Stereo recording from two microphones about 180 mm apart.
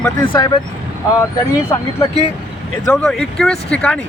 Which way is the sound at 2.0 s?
35° left (ahead or behind).